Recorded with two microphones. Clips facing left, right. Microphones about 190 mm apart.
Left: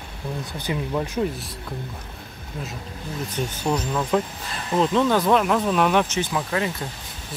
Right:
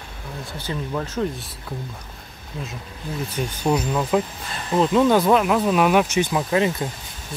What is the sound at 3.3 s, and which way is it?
Speech, 10° right (ahead or behind).